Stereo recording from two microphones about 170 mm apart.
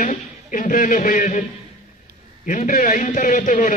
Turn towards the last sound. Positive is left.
turn(degrees=50)  # may be behind; listen again after turning